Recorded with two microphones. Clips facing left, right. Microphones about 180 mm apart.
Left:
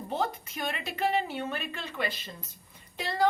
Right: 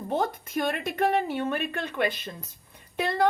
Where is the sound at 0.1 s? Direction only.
55° right (ahead or behind).